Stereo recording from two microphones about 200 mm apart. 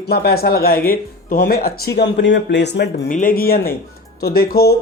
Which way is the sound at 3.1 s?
40° left (ahead or behind).